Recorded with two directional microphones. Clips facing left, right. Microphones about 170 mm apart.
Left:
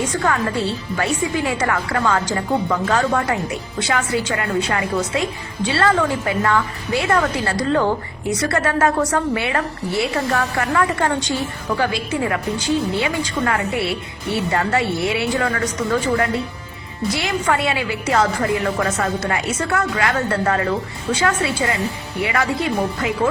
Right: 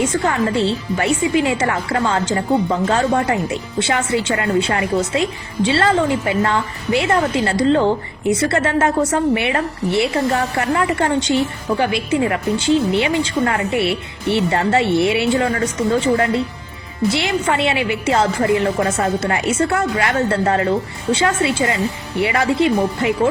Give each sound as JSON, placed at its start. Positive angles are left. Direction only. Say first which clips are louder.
{"t": 0.0, "sound": "a woman's voice", "louder": "right 3 dB", "side_deg": -25}